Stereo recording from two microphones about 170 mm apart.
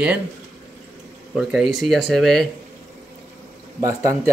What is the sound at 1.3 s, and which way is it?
Speech, centre (ahead or behind).